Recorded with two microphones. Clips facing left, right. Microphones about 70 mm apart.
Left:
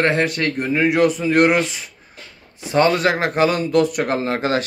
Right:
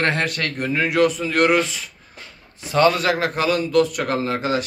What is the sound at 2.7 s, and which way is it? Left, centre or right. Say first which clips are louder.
Speech: left 1 dB; left.